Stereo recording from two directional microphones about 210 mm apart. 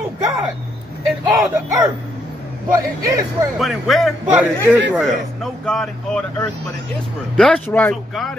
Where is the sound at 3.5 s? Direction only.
Centre (ahead or behind).